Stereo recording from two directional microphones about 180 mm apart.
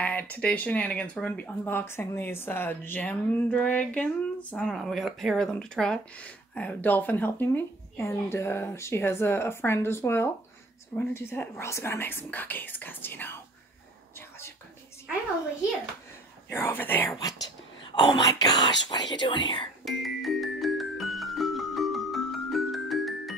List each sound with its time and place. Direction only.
0.0 s speech: 10° left (ahead or behind)
16.4 s speech: 15° left (ahead or behind)
19.8 s music: centre (ahead or behind)